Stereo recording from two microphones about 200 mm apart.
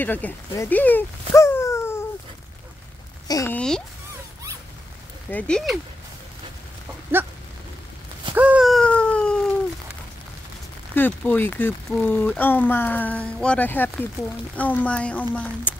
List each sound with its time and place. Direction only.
0.0 s speech: 10° left (ahead or behind)
1.3 s a sound: 15° left (ahead or behind)
3.3 s speech: 15° left (ahead or behind)
3.5 s speech: 5° left (ahead or behind)
5.3 s speech: centre (ahead or behind)
8.4 s cat: 5° right (ahead or behind)
11.0 s speech: 10° left (ahead or behind)